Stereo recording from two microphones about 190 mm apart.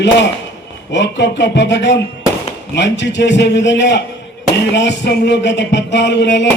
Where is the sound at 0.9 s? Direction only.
65° left (ahead or behind).